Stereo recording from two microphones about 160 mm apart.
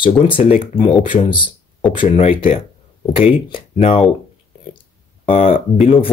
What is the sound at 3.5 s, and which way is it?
Speech, 35° left (ahead or behind).